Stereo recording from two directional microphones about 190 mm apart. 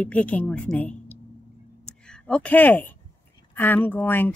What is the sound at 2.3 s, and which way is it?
Speech, 10° left (ahead or behind).